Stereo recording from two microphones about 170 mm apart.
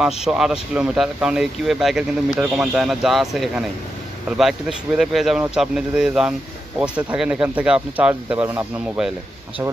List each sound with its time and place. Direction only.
0.0 s speech: 5° right (ahead or behind)